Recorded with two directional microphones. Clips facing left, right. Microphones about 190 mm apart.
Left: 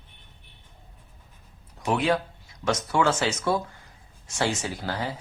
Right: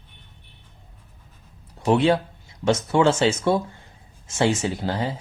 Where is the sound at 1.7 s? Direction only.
30° right (ahead or behind).